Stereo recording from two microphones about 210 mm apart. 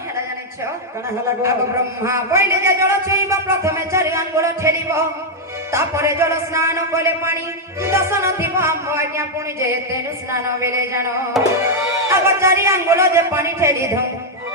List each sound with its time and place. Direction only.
1.4 s a man's voice: 15° right (ahead or behind)
11.3 s music: centre (ahead or behind)
12.0 s a man's voice: 15° right (ahead or behind)